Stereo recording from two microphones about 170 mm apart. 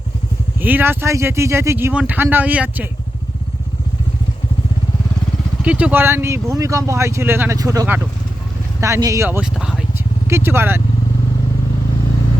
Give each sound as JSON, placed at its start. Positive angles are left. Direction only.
{"t": 0.6, "sound": "speech", "side_deg": -10}
{"t": 5.6, "sound": "speech", "side_deg": -10}
{"t": 9.4, "sound": "speech", "side_deg": -5}
{"t": 10.2, "sound": "speech", "side_deg": -15}